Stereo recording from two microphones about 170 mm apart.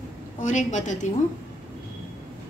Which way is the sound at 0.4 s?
45° left (ahead or behind).